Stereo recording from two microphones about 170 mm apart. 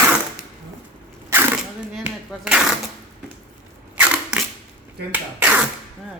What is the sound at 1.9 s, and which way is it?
Speech, 5° right (ahead or behind).